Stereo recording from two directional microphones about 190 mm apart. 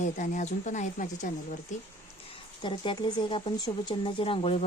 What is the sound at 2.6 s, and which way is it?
Speech, 25° left (ahead or behind).